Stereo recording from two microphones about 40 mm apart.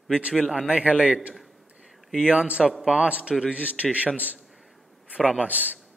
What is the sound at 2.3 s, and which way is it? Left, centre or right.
A man's voice, right.